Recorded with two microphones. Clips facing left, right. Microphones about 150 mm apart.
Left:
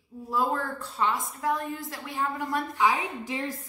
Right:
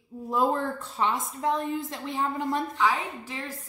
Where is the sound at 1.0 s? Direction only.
25° right (ahead or behind).